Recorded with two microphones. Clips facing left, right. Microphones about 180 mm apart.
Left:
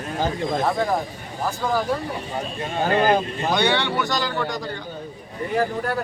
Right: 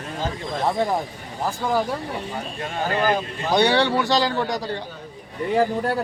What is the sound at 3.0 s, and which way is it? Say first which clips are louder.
Speech: left 2 dB; 50° left (ahead or behind).